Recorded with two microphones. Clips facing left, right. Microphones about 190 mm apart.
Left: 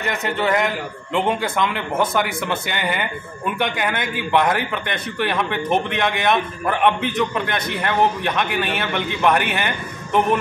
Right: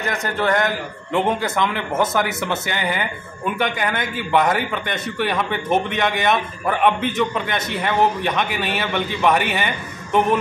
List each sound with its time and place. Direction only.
0.0 s a man's voice: centre (ahead or behind)